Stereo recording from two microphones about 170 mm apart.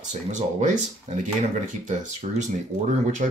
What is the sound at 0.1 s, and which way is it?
Speech, 45° right (ahead or behind).